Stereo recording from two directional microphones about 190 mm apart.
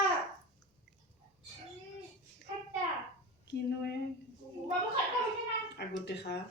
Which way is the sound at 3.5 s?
65° left (ahead or behind).